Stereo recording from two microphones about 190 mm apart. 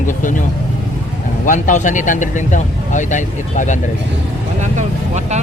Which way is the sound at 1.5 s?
40° left (ahead or behind).